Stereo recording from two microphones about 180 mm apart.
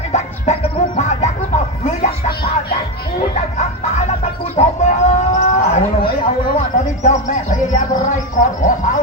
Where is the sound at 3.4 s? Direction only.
40° left (ahead or behind).